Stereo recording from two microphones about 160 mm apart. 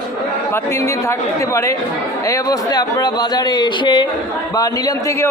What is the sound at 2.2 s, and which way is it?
A man's voice, 20° left (ahead or behind).